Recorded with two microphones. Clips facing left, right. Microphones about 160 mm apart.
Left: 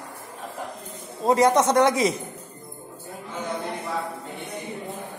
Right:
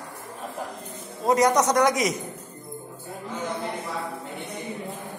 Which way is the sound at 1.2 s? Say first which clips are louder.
Left 1 dB; 25° left (ahead or behind).